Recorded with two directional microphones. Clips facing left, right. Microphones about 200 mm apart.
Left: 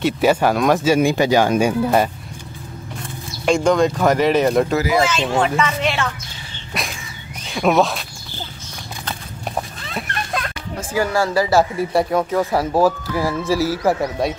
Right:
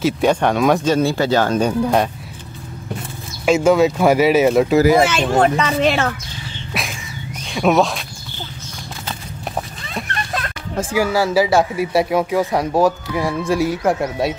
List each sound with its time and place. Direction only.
0.0 s speech: 5° left (ahead or behind)
0.9 s speech: 15° left (ahead or behind)
3.4 s speech: 5° right (ahead or behind)
4.8 s speech: 60° right (ahead or behind)
5.4 s a woman's voice: 35° right (ahead or behind)
6.7 s a sound: centre (ahead or behind)
7.4 s speech: centre (ahead or behind)
9.8 s a sound: centre (ahead or behind)
11.0 s speech: 5° right (ahead or behind)